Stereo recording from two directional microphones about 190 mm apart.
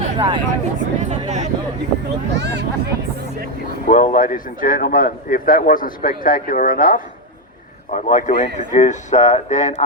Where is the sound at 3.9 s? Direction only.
45° left (ahead or behind).